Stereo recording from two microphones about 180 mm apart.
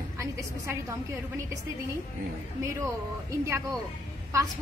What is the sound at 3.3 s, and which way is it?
Speech, 15° right (ahead or behind).